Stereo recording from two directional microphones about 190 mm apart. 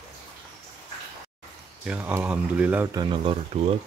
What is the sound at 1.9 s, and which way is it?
Speech, 10° right (ahead or behind).